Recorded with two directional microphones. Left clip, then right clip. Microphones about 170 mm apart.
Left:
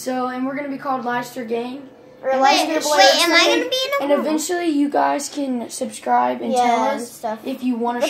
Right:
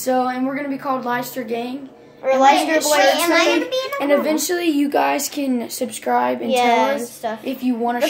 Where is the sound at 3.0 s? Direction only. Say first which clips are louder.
Left 5 dB; 35° left (ahead or behind).